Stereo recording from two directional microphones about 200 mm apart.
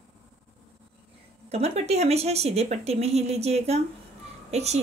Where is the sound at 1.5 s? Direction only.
30° right (ahead or behind).